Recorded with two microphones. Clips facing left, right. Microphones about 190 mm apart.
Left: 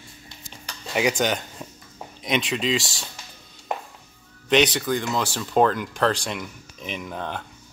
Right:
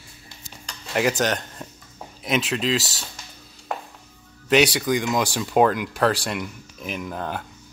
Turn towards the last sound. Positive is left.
turn(degrees=-5)  # may be behind; listen again after turning